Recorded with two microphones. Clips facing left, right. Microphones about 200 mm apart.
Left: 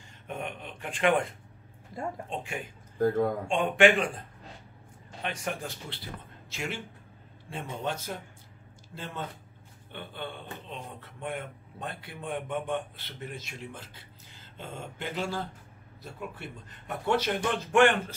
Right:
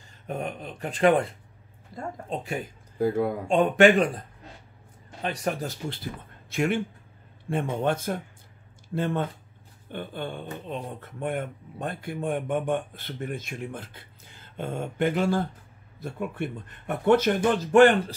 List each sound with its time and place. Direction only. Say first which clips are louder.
0.3 s speech: right 5 dB; 40° right (ahead or behind)
1.9 s speech: left 1 dB; 10° right (ahead or behind)
2.2 s speech: right 5 dB; 40° right (ahead or behind)
3.0 s speech: right 1 dB; 10° right (ahead or behind)
3.4 s speech: right 6 dB; 45° right (ahead or behind)
5.2 s speech: right 6 dB; 40° right (ahead or behind)
6.5 s speech: right 11 dB; 55° right (ahead or behind)
9.8 s speech: right 6 dB; 45° right (ahead or behind)